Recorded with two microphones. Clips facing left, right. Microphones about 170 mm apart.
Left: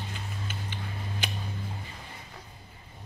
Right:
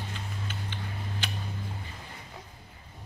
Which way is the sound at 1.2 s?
15° left (ahead or behind).